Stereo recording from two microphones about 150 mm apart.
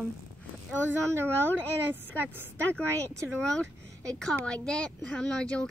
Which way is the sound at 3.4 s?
5° left (ahead or behind).